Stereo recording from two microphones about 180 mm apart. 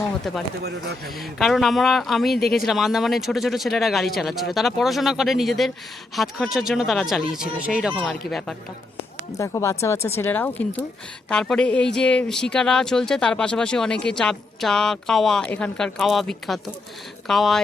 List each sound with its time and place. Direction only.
0.3 s speech: centre (ahead or behind)
9.4 s speech: 15° left (ahead or behind); by 17.6 s centre (ahead or behind)